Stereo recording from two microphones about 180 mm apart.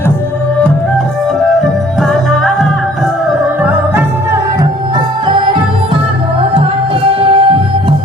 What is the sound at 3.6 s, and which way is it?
Music, 10° right (ahead or behind).